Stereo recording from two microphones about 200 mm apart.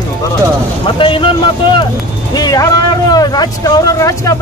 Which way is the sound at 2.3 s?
20° left (ahead or behind).